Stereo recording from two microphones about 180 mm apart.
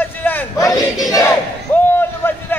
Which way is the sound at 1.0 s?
20° left (ahead or behind).